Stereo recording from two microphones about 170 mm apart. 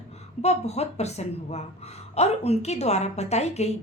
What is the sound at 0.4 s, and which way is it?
A woman's voice, 40° left (ahead or behind).